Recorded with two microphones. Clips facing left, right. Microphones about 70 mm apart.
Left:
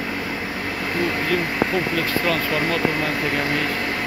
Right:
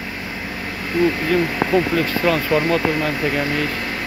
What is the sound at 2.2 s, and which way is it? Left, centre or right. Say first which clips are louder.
Speech: right 4 dB; centre.